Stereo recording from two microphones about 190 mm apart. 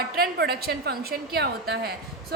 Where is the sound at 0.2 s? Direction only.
55° right (ahead or behind).